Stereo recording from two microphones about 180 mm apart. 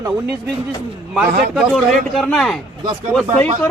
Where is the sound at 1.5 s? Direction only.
5° right (ahead or behind).